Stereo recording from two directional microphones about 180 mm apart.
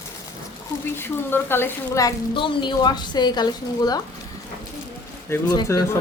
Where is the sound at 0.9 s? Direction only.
10° left (ahead or behind).